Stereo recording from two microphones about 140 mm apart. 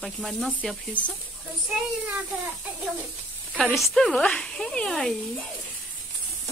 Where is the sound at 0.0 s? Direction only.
5° left (ahead or behind).